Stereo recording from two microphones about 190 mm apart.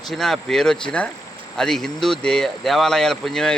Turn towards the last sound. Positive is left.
turn(degrees=0)  # may be behind; listen again after turning